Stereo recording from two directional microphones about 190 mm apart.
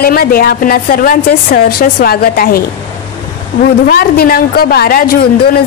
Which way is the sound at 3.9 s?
50° left (ahead or behind).